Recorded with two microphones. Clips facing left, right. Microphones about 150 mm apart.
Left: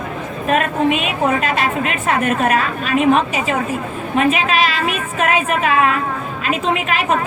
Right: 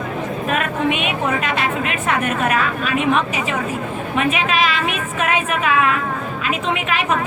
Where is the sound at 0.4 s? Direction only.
35° left (ahead or behind).